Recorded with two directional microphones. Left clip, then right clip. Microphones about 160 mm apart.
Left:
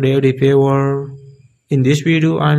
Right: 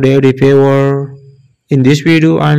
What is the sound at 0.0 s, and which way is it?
Mantra, 35° right (ahead or behind).